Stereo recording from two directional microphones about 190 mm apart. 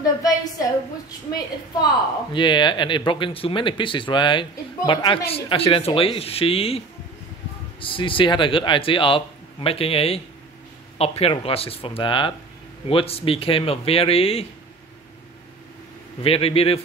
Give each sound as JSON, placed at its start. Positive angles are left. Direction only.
{"t": 0.0, "sound": "a sound", "side_deg": 20}
{"t": 2.3, "sound": "speech", "side_deg": 25}
{"t": 7.8, "sound": "speech", "side_deg": 25}
{"t": 16.2, "sound": "speech", "side_deg": 30}